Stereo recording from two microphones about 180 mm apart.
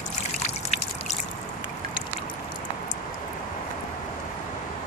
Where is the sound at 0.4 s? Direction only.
40° left (ahead or behind).